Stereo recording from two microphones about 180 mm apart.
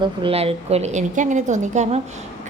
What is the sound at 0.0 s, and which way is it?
A woman's voice, 30° right (ahead or behind).